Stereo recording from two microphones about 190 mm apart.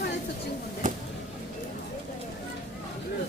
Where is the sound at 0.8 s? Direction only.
45° right (ahead or behind).